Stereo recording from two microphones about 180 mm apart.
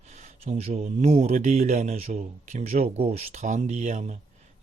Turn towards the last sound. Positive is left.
turn(degrees=-45)  # may be behind; listen again after turning